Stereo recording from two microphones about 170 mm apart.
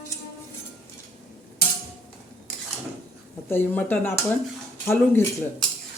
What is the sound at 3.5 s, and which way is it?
Speech, 10° left (ahead or behind).